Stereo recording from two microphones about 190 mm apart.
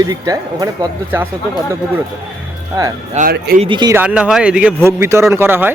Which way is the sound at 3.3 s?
55° right (ahead or behind).